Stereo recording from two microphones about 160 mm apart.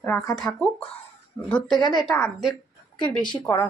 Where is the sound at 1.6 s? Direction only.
25° left (ahead or behind).